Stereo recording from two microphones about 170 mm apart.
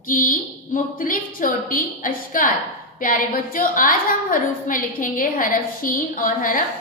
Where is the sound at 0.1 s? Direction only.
55° left (ahead or behind).